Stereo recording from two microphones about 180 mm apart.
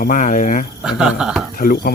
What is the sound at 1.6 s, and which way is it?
Speech, 50° left (ahead or behind).